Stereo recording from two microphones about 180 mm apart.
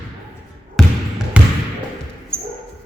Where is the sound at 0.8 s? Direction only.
Centre (ahead or behind).